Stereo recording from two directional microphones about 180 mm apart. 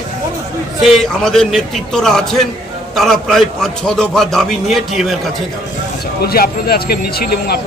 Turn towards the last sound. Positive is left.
turn(degrees=60)  # may be behind; listen again after turning